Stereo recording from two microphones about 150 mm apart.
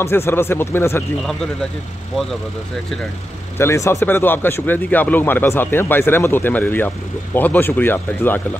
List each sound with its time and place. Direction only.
0.0 s speech: 15° left (ahead or behind)
3.5 s speech: 20° left (ahead or behind)